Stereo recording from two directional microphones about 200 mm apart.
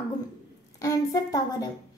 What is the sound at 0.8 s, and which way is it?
Speech, 15° left (ahead or behind).